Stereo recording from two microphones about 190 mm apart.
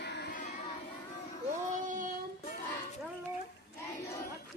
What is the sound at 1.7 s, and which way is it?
Child singing, 45° right (ahead or behind).